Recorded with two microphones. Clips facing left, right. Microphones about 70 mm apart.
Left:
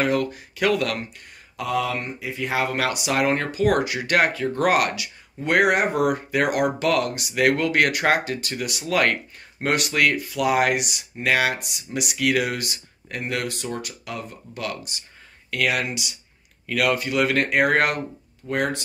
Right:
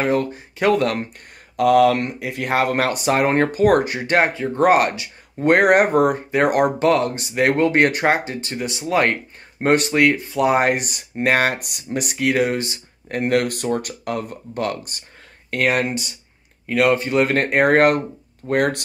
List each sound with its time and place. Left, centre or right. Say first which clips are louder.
0.0 s speech: right 2 dB; right
1.6 s speech: right 11 dB; right
5.4 s speech: right 5 dB; right
13.2 s speech: right 9 dB; right
18.5 s speech: right 5 dB; right